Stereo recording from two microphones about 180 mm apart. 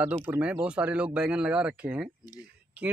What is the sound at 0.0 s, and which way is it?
Speech, 10° right (ahead or behind).